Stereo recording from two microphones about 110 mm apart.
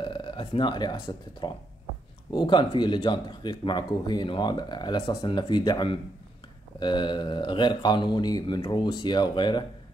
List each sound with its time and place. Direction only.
0.0 s speech: 50° left (ahead or behind)